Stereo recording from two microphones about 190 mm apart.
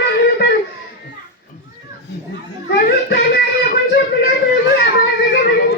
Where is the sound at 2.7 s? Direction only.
55° left (ahead or behind).